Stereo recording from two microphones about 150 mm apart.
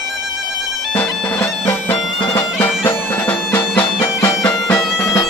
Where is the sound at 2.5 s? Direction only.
15° left (ahead or behind).